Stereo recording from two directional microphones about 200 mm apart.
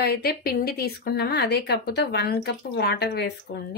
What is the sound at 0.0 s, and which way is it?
Speech, 50° left (ahead or behind).